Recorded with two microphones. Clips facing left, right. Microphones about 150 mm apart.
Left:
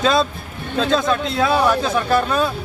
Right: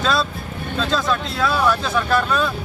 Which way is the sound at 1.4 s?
20° left (ahead or behind).